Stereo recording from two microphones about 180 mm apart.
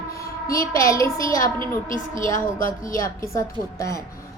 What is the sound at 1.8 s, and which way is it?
Speech, 45° left (ahead or behind).